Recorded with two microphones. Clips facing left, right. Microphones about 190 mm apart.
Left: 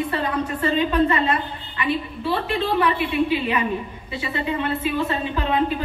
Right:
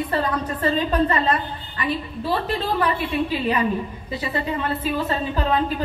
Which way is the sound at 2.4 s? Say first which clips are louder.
Left 4 dB; 40° right (ahead or behind).